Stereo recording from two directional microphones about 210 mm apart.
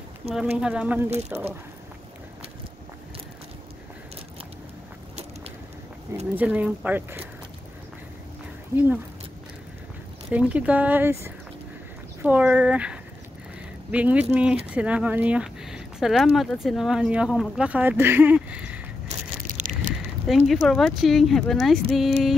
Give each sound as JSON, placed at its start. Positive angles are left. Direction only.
{"t": 0.3, "sound": "speech", "side_deg": -5}
{"t": 6.3, "sound": "speech", "side_deg": -5}
{"t": 10.3, "sound": "speech", "side_deg": -5}
{"t": 19.0, "sound": "a sound", "side_deg": -35}
{"t": 20.2, "sound": "speech", "side_deg": 0}